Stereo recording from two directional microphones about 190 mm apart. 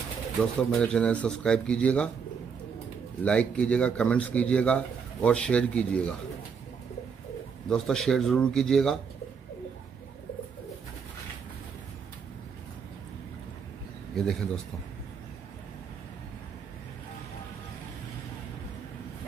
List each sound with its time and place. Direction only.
0.6 s speech: 5° left (ahead or behind)
3.3 s speech: 5° left (ahead or behind)
7.7 s speech: centre (ahead or behind)
14.1 s speech: centre (ahead or behind)